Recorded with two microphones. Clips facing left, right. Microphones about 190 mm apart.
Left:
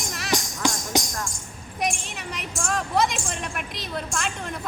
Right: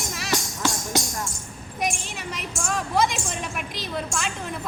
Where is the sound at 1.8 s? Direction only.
Centre (ahead or behind).